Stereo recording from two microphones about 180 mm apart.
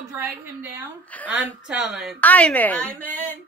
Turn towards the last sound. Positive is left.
turn(degrees=10)  # may be behind; listen again after turning